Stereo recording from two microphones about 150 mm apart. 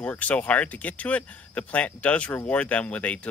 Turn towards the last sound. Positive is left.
turn(degrees=10)  # may be behind; listen again after turning